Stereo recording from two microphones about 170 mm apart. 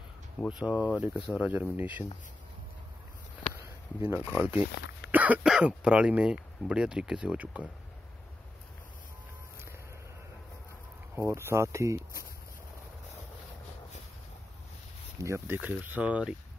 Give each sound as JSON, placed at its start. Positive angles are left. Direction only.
{"t": 0.5, "sound": "speech", "side_deg": -5}
{"t": 3.5, "sound": "speech", "side_deg": -10}
{"t": 11.1, "sound": "speech", "side_deg": -15}
{"t": 15.1, "sound": "speech", "side_deg": -15}